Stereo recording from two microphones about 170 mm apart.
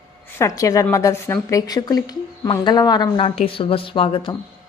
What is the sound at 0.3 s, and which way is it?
Speech, 20° left (ahead or behind).